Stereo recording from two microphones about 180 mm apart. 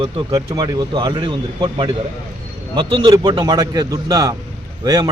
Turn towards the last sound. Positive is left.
turn(degrees=-20)  # may be behind; listen again after turning